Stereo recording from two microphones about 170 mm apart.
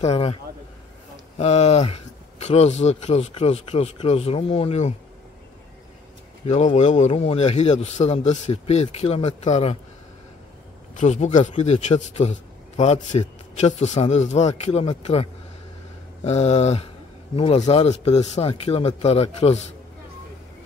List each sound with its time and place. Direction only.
0.0 s a man's voice: 35° left (ahead or behind)
1.4 s a man's voice: 40° left (ahead or behind)
6.4 s a man's voice: 40° left (ahead or behind)
11.0 s a man's voice: 40° left (ahead or behind)
16.3 s a man's voice: 40° left (ahead or behind)